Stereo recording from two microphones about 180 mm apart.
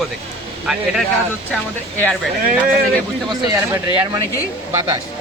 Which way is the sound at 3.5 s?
15° right (ahead or behind).